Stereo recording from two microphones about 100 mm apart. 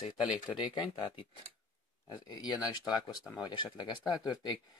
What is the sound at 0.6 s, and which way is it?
Speech, 50° left (ahead or behind).